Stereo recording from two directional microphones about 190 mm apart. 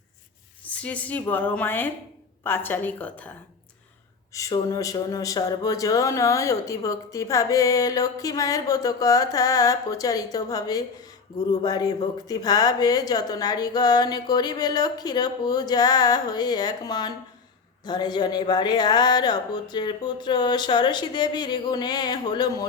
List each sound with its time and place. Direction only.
0.6 s speech: 5° left (ahead or behind)
4.4 s speech: 15° left (ahead or behind)